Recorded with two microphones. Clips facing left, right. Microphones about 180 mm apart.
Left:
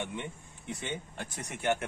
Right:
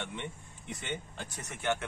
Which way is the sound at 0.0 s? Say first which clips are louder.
Left 2 dB; 10° left (ahead or behind).